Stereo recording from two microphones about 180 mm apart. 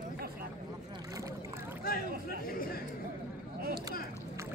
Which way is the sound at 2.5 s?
55° left (ahead or behind).